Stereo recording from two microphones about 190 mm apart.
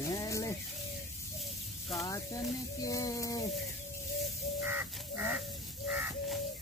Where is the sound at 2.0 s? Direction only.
20° left (ahead or behind).